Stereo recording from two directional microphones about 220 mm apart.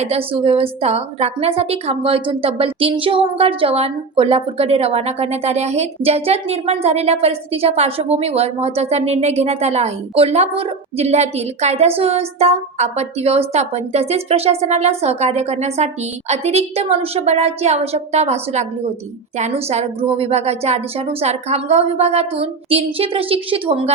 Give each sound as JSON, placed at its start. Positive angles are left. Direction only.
{"t": 0.0, "sound": "speech", "side_deg": -25}